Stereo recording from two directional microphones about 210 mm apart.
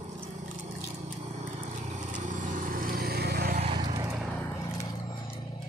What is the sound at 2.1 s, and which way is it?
Vehicle, 35° right (ahead or behind).